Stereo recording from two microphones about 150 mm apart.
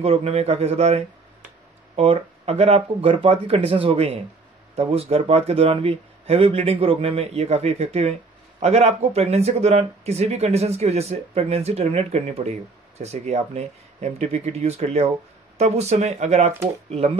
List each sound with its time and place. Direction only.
0.0 s speech: 45° right (ahead or behind)